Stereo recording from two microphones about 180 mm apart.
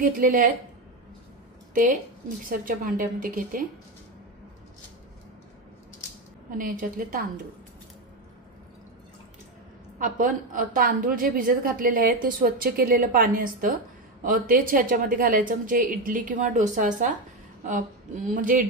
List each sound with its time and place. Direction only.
0.0 s a woman's voice: 50° right (ahead or behind)
1.7 s a woman's voice: 45° right (ahead or behind)
6.6 s a woman's voice: 50° right (ahead or behind)
9.9 s a woman's voice: 45° right (ahead or behind)